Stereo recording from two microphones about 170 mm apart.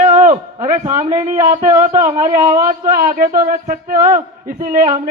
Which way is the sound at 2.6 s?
55° right (ahead or behind).